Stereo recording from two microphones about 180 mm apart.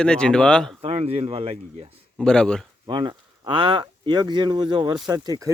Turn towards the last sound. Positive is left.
turn(degrees=-20)  # may be behind; listen again after turning